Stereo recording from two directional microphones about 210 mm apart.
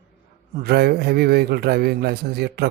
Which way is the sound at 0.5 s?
50° right (ahead or behind).